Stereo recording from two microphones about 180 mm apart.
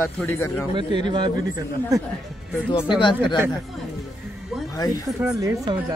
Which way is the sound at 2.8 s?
25° left (ahead or behind).